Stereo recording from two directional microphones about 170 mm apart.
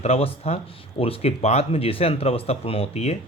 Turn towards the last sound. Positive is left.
turn(degrees=40)  # may be behind; listen again after turning